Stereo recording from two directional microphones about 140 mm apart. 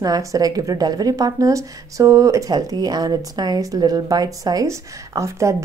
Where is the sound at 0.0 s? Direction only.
25° right (ahead or behind).